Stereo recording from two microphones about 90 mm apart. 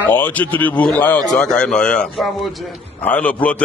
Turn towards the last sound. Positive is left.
turn(degrees=15)  # may be behind; listen again after turning